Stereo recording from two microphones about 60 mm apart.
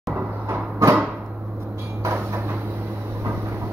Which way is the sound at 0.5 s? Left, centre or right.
Right.